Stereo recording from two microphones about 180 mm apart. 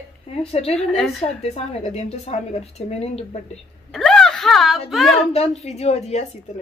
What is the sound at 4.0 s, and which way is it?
Speech, 5° left (ahead or behind).